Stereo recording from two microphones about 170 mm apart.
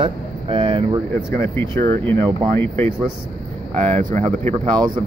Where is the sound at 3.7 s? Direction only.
35° right (ahead or behind).